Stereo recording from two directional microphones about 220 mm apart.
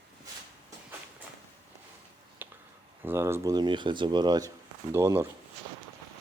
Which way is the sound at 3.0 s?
10° right (ahead or behind).